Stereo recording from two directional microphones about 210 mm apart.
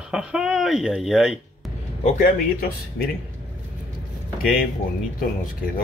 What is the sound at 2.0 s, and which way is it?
Speech, 40° left (ahead or behind).